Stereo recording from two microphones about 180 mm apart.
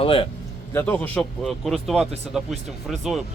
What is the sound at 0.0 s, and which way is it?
Speech, 30° left (ahead or behind).